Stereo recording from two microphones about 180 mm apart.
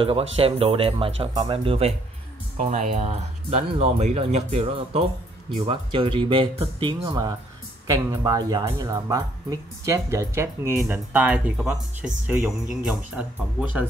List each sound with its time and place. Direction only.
0.4 s speech: 30° right (ahead or behind); by 13.7 s 5° right (ahead or behind)